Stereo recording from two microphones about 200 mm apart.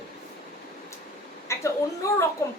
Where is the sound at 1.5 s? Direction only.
15° left (ahead or behind).